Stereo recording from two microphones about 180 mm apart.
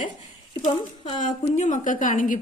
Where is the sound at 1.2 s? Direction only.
40° left (ahead or behind).